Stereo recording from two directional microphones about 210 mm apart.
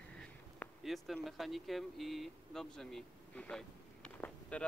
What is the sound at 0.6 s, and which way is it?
Speech, centre (ahead or behind).